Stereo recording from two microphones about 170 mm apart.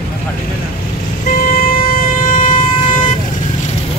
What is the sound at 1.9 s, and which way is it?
Vehicle, 50° left (ahead or behind).